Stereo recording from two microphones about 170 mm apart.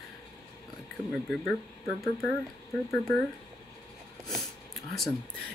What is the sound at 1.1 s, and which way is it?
Speech, centre (ahead or behind).